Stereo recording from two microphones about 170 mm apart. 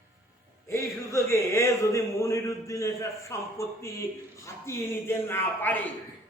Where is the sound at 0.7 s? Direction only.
15° left (ahead or behind).